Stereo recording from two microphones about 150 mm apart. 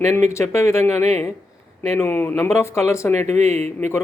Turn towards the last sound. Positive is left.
turn(degrees=-50)  # may be behind; listen again after turning